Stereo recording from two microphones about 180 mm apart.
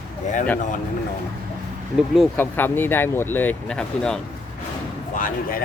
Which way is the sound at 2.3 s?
10° left (ahead or behind).